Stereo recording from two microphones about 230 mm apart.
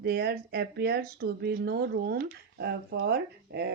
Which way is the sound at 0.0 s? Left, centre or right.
Right.